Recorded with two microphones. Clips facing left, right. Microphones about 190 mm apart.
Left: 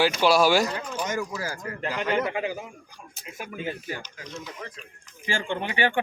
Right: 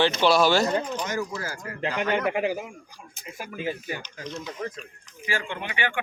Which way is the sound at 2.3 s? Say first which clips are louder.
Right 3 dB; 20° right (ahead or behind).